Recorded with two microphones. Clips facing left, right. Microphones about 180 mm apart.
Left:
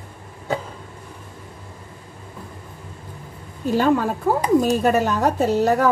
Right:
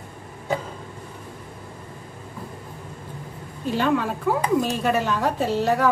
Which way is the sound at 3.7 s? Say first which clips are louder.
Left 4 dB; 40° left (ahead or behind).